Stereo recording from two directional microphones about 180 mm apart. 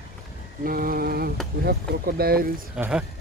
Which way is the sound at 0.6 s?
55° right (ahead or behind).